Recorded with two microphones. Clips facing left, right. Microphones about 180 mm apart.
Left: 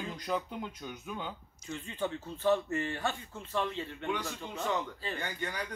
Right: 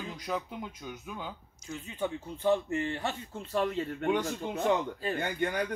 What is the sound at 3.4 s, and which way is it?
A man's voice, 40° right (ahead or behind).